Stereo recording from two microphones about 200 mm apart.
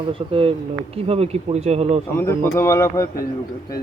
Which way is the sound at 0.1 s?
25° right (ahead or behind).